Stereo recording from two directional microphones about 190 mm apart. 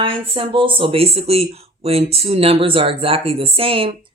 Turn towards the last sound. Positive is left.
turn(degrees=-30)  # may be behind; listen again after turning